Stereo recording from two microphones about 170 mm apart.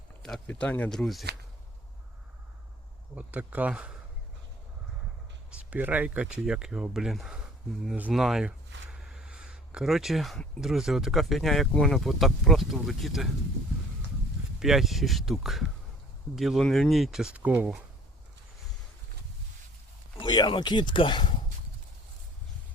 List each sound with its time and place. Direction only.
0.2 s speech: 5° left (ahead or behind)
3.2 s speech: 10° right (ahead or behind)
5.5 s speech: 10° right (ahead or behind)
14.6 s speech: centre (ahead or behind)
20.1 s speech: 25° left (ahead or behind)